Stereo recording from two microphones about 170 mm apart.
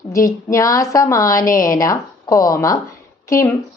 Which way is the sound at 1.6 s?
20° left (ahead or behind).